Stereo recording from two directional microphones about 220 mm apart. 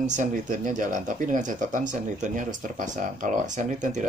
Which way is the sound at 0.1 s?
35° right (ahead or behind).